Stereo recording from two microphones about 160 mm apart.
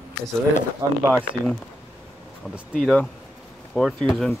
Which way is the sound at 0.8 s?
20° right (ahead or behind).